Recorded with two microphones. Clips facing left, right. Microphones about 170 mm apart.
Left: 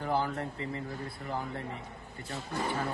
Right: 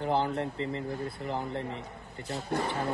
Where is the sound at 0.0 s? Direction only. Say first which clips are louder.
Right 3 dB; 20° right (ahead or behind).